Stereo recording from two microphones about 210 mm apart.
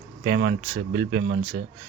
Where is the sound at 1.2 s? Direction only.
45° right (ahead or behind).